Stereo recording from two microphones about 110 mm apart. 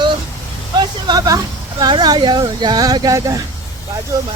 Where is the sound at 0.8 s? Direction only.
40° right (ahead or behind).